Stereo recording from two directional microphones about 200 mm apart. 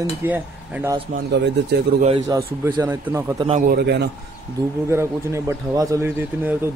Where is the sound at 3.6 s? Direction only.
50° right (ahead or behind).